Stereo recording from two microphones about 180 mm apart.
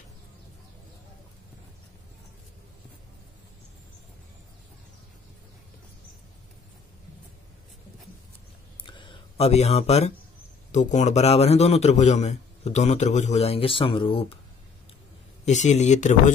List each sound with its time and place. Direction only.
8.8 s a sound: 25° left (ahead or behind)
10.7 s a man's voice: 40° left (ahead or behind)
15.4 s a man's voice: 40° left (ahead or behind)